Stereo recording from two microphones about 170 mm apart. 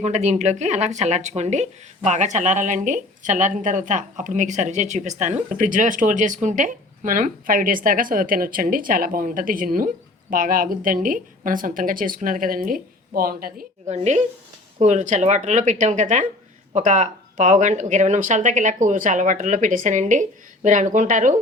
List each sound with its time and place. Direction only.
0.0 s speech: 45° right (ahead or behind); by 13.7 s 60° right (ahead or behind)
13.8 s a woman's voice: 40° right (ahead or behind)